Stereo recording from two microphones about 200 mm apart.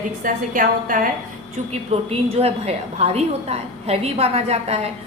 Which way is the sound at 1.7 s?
30° right (ahead or behind).